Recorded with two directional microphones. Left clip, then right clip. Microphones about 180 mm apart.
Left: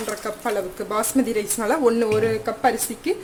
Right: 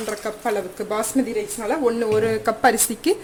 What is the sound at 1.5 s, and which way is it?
Speech, 15° left (ahead or behind).